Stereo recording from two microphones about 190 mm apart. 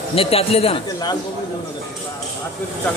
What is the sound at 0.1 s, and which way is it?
Speech, 30° left (ahead or behind).